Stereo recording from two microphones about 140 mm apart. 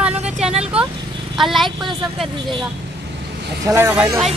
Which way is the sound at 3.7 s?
15° right (ahead or behind).